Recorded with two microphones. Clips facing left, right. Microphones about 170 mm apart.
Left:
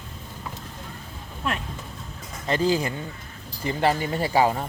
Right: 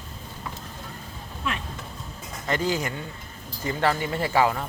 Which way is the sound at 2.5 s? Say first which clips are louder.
Left 3 dB; 30° left (ahead or behind).